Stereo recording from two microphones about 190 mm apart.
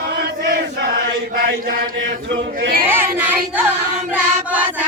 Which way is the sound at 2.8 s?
10° right (ahead or behind).